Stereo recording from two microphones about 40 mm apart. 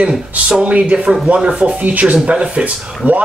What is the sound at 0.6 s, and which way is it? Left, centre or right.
A man's voice, right.